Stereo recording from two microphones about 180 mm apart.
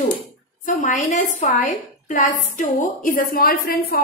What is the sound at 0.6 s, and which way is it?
A woman's voice, 45° left (ahead or behind).